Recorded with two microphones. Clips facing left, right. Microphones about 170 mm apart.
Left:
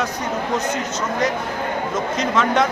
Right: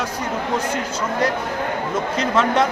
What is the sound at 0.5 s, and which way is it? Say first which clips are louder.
Speech: even; 30° right (ahead or behind).